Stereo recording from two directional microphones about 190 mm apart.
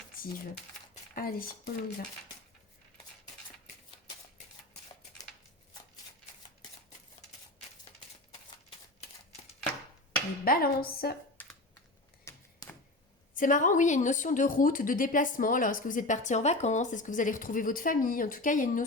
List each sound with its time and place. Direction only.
0.2 s speech: 50° left (ahead or behind)
10.4 s a woman's voice: 50° left (ahead or behind)
11.4 s computer keyboard: 10° left (ahead or behind)
12.2 s typewriter: 15° left (ahead or behind)
13.3 s a woman's voice: 45° left (ahead or behind)